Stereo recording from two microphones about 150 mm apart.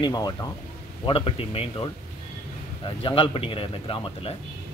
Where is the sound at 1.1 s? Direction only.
35° left (ahead or behind).